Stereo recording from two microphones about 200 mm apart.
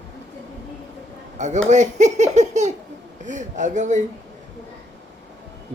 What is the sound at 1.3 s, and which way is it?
Speech, 35° right (ahead or behind).